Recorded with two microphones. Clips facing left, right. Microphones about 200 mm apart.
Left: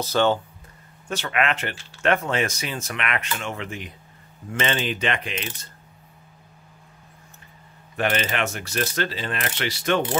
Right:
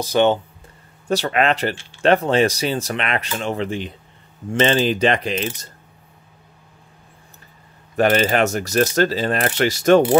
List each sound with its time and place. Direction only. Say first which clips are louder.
0.0 s speech: right 4 dB; 15° right (ahead or behind)
1.0 s speech: right 6 dB; 35° right (ahead or behind)
7.9 s speech: right 8 dB; 40° right (ahead or behind)